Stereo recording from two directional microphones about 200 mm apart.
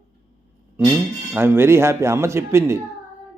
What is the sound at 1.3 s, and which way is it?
Speech, 10° right (ahead or behind).